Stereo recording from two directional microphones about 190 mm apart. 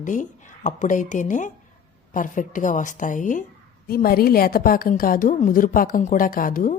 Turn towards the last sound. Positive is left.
turn(degrees=45)  # may be behind; listen again after turning